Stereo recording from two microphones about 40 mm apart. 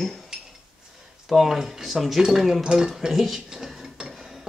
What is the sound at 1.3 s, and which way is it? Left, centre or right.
Speech, centre.